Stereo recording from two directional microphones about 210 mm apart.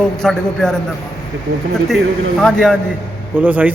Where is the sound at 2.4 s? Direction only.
5° left (ahead or behind).